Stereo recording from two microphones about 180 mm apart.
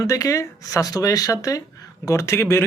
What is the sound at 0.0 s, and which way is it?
Speech, 20° left (ahead or behind).